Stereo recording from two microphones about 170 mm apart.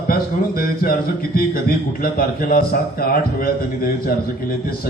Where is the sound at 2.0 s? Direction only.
60° left (ahead or behind).